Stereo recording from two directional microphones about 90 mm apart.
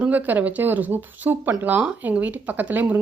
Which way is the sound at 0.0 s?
20° right (ahead or behind).